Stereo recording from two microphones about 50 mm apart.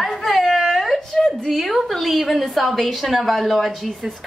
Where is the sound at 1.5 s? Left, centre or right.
Centre.